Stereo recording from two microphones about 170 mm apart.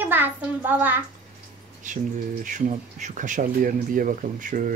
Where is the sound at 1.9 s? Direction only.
45° right (ahead or behind).